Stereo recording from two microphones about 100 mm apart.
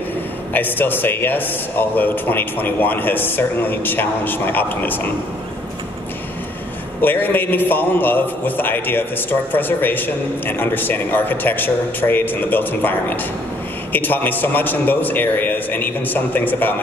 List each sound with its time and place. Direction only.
0.5 s a man's voice: 20° left (ahead or behind)
7.0 s a man's voice: 20° left (ahead or behind)